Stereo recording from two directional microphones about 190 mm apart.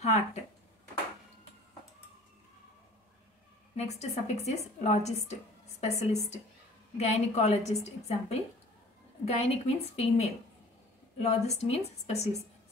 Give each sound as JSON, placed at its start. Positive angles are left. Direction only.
{"t": 0.0, "sound": "a woman's voice", "side_deg": 35}
{"t": 3.7, "sound": "a woman's voice", "side_deg": 35}